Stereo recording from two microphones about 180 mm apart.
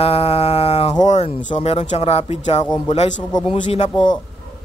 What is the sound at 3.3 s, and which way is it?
Speech, 25° left (ahead or behind).